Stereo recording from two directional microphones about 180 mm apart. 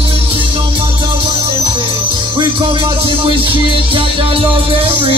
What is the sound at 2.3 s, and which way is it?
Music, 25° right (ahead or behind).